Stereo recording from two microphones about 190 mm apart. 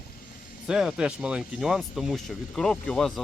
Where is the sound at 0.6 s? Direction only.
5° right (ahead or behind).